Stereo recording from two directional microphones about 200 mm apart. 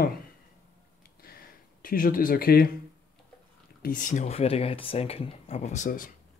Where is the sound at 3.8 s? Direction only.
40° left (ahead or behind).